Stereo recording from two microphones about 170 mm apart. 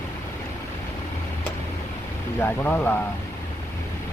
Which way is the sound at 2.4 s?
10° left (ahead or behind).